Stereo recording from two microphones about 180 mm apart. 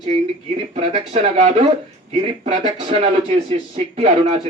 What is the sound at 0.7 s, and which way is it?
Speech, 35° right (ahead or behind).